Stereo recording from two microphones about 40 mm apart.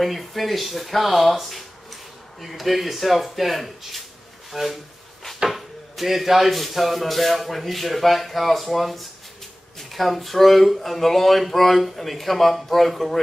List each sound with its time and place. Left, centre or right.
0.0 s speech: centre